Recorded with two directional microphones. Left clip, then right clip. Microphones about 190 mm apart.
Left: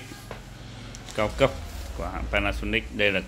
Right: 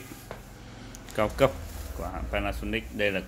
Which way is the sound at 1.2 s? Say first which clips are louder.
Left 1 dB; 15° right (ahead or behind).